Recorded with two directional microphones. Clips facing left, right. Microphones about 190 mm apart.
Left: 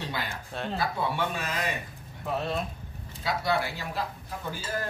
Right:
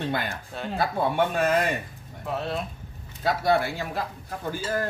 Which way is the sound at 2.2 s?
Centre (ahead or behind).